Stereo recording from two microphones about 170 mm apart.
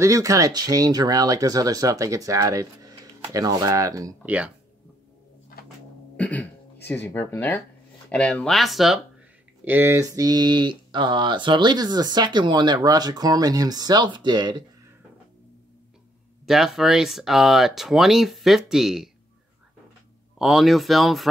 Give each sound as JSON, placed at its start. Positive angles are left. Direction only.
{"t": 0.0, "sound": "speech", "side_deg": -20}
{"t": 4.2, "sound": "speech", "side_deg": -10}
{"t": 6.1, "sound": "cough", "side_deg": 10}
{"t": 7.1, "sound": "speech", "side_deg": 15}
{"t": 9.7, "sound": "speech", "side_deg": -15}
{"t": 16.4, "sound": "speech", "side_deg": 0}
{"t": 20.3, "sound": "speech", "side_deg": 0}